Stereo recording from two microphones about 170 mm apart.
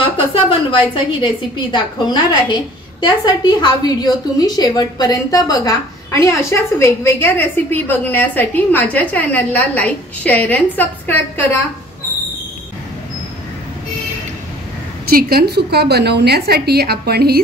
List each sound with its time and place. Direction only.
0.0 s a woman's voice: 30° left (ahead or behind); by 11.6 s 10° left (ahead or behind)
15.0 s a woman's voice: 60° right (ahead or behind)